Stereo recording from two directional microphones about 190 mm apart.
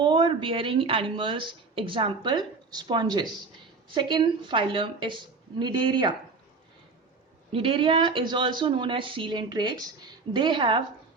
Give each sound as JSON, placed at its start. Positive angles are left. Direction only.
{"t": 0.0, "sound": "speech", "side_deg": -25}
{"t": 7.5, "sound": "speech", "side_deg": -30}